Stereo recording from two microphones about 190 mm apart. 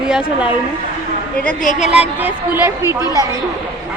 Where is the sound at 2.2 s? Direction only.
10° right (ahead or behind).